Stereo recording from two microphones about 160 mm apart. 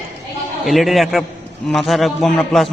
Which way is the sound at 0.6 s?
Centre (ahead or behind).